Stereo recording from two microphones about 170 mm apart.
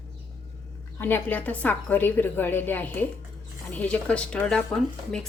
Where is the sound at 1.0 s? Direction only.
10° left (ahead or behind).